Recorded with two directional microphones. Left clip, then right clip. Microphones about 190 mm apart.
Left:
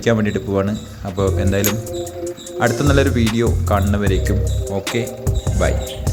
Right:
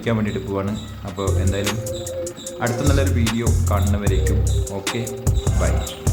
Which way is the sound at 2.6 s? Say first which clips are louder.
Left 6 dB; 35° left (ahead or behind).